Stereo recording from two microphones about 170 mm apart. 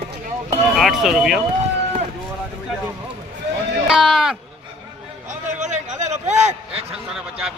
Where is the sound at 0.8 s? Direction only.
Centre (ahead or behind).